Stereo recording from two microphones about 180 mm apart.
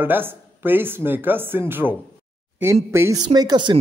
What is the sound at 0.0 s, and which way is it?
Speech, 10° right (ahead or behind).